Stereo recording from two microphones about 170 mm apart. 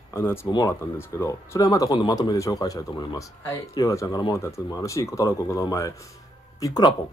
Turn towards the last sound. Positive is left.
turn(degrees=20)  # may be behind; listen again after turning